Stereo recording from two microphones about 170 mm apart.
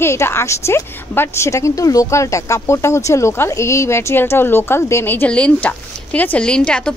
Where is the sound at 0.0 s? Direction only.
15° left (ahead or behind).